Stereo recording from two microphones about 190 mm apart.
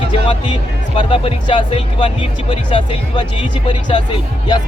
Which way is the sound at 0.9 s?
25° left (ahead or behind).